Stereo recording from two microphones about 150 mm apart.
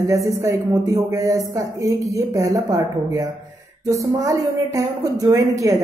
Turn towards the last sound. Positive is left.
turn(degrees=-25)  # may be behind; listen again after turning